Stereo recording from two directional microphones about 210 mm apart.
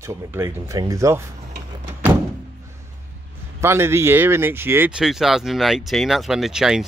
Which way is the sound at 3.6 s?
10° right (ahead or behind).